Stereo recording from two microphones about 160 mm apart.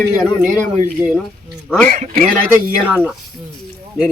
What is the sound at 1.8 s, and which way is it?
Speech, 55° right (ahead or behind).